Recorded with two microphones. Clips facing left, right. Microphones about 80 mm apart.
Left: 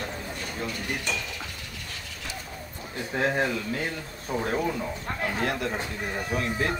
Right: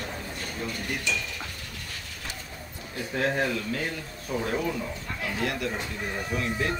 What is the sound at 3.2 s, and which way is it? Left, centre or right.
Speech, centre.